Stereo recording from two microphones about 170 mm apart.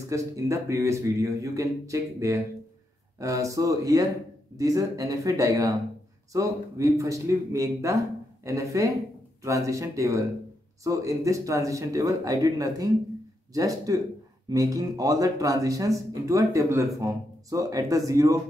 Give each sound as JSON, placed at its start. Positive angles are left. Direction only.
{"t": 0.1, "sound": "speech", "side_deg": -20}